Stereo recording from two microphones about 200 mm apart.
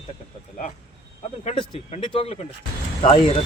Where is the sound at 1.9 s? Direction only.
30° left (ahead or behind).